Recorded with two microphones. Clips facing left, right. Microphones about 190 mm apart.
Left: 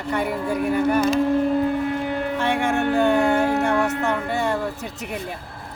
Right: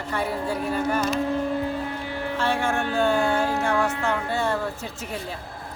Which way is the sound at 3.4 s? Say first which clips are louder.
Left 4 dB; 60° left (ahead or behind).